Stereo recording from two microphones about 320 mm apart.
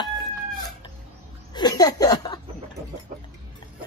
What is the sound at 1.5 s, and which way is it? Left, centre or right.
Chuckle, centre.